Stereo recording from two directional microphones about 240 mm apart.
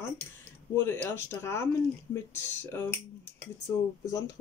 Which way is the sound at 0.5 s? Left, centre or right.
Centre.